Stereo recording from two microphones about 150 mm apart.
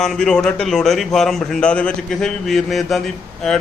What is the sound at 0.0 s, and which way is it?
A man's voice, 5° left (ahead or behind).